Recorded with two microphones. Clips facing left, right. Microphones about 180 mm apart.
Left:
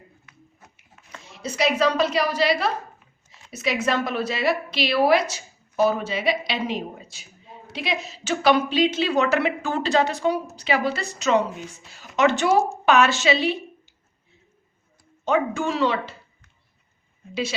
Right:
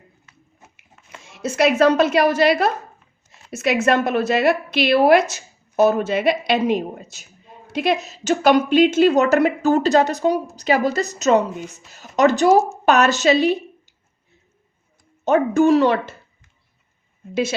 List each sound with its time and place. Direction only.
1.5 s a woman's voice: 50° right (ahead or behind)
3.3 s a sound: 55° right (ahead or behind)
3.8 s a woman's voice: 55° right (ahead or behind)
15.2 s a woman's voice: 45° right (ahead or behind)